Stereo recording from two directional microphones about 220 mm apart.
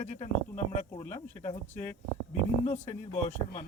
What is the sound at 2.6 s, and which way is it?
Speech, 30° left (ahead or behind).